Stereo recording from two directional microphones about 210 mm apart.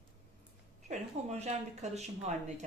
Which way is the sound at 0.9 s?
30° right (ahead or behind).